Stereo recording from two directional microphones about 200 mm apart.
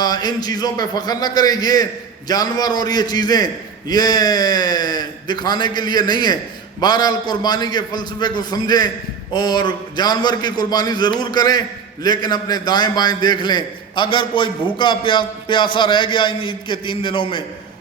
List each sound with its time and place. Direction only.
0.0 s a man's voice: 20° left (ahead or behind)